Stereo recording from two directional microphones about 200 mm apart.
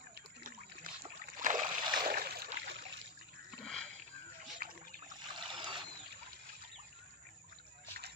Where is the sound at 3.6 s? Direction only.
5° left (ahead or behind).